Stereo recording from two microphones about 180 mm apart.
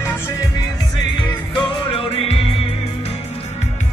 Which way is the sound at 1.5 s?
25° left (ahead or behind).